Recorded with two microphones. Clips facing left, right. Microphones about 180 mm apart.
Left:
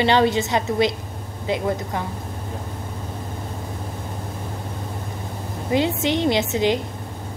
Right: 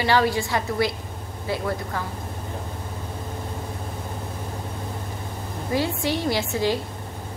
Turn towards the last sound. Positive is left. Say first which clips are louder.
# left 3 dB
turn(degrees=20)  # may be behind; listen again after turning